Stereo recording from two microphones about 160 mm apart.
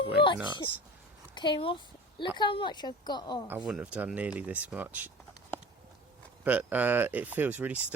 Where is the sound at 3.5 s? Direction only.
5° right (ahead or behind).